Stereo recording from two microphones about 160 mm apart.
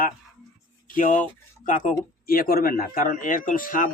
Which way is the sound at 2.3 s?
65° left (ahead or behind).